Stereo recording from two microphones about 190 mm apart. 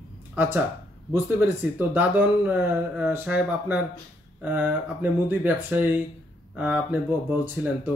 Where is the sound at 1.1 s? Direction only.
10° right (ahead or behind).